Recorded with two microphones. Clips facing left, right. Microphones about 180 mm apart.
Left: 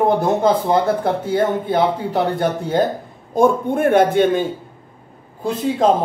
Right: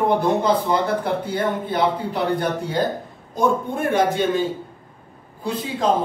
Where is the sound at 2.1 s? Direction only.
50° left (ahead or behind).